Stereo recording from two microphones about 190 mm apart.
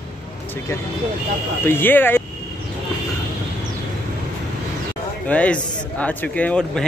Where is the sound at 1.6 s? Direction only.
10° left (ahead or behind).